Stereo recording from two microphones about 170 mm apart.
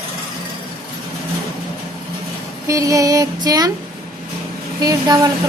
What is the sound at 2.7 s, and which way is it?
Speech, 20° right (ahead or behind).